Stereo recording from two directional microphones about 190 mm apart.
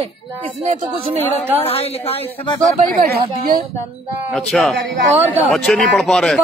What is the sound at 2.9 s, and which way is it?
Speech, 45° right (ahead or behind).